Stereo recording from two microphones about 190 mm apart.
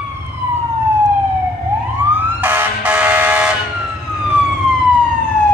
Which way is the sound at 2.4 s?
10° right (ahead or behind).